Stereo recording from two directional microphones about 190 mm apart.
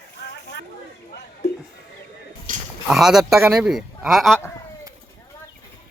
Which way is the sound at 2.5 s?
45° right (ahead or behind).